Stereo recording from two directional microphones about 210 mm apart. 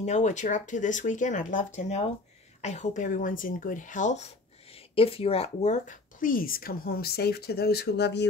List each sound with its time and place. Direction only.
0.0 s speech: 35° left (ahead or behind); by 8.3 s 55° left (ahead or behind)